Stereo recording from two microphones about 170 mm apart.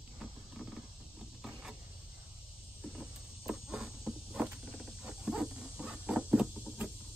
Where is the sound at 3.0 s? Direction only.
5° right (ahead or behind).